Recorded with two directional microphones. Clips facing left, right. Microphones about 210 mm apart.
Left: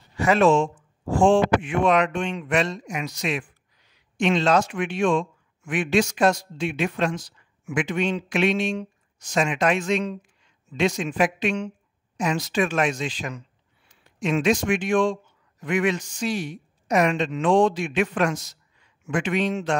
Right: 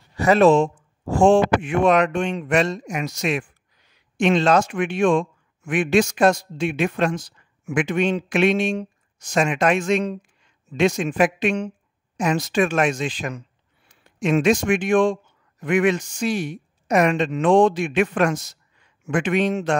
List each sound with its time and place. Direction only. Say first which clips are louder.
0.2 s speech: right 3 dB; 40° right (ahead or behind)